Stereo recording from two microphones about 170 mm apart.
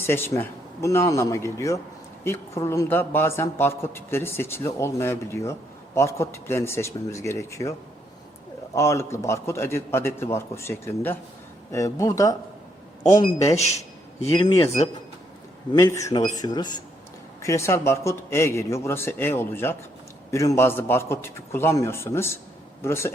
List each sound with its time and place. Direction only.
0.0 s a man's voice: 15° left (ahead or behind)
13.6 s a sound: 40° left (ahead or behind)
14.3 s speech: 15° left (ahead or behind)
15.7 s a man's voice: 20° left (ahead or behind)